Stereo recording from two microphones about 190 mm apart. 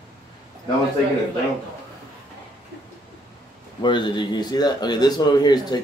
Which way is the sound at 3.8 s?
25° left (ahead or behind).